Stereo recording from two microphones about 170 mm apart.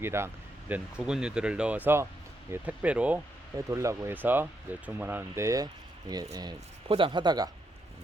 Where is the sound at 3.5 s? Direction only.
20° right (ahead or behind).